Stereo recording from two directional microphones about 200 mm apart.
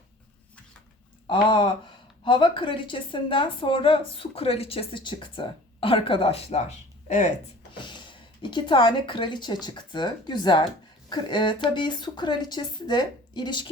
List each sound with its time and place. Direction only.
1.3 s speech: 25° left (ahead or behind)
7.8 s speech: 25° left (ahead or behind)